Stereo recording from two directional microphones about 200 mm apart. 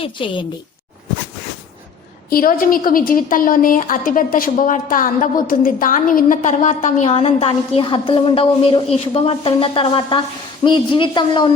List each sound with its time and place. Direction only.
0.0 s a woman's voice: 25° left (ahead or behind)
2.3 s a woman's voice: 45° left (ahead or behind); by 11.4 s 25° left (ahead or behind)